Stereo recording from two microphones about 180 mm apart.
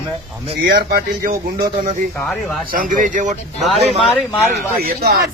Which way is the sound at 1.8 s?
45° right (ahead or behind).